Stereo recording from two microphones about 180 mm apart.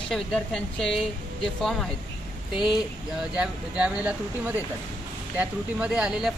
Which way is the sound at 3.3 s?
5° right (ahead or behind).